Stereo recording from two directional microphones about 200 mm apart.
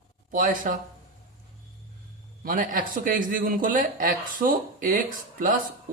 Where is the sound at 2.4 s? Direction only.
45° right (ahead or behind).